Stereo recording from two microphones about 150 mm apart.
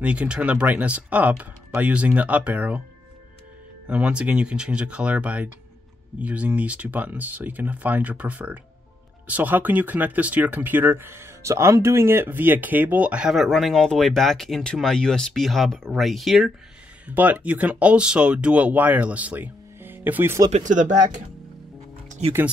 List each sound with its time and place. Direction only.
0.0 s speech: 10° right (ahead or behind)
3.8 s speech: 5° right (ahead or behind)
17.1 s speech: 10° right (ahead or behind)
20.5 s speech: 55° right (ahead or behind)
22.2 s speech: 45° right (ahead or behind)